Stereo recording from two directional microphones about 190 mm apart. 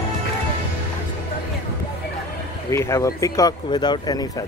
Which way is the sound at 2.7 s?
15° left (ahead or behind).